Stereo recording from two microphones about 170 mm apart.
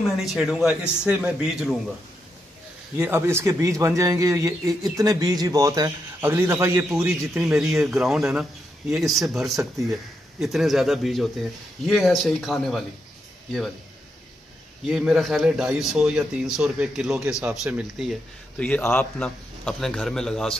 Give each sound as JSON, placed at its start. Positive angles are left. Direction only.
{"t": 0.0, "sound": "speech", "side_deg": 0}
{"t": 3.0, "sound": "speech", "side_deg": -15}
{"t": 14.9, "sound": "speech", "side_deg": 0}
{"t": 18.6, "sound": "speech", "side_deg": 10}